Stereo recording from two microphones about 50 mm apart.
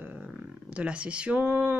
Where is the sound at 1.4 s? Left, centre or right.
Right.